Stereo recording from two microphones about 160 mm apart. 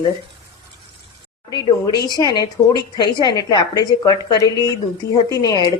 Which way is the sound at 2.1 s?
25° left (ahead or behind).